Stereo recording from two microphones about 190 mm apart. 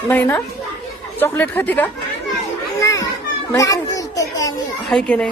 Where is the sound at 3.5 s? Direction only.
15° left (ahead or behind).